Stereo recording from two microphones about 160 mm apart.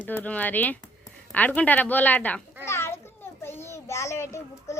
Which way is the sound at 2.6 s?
15° left (ahead or behind).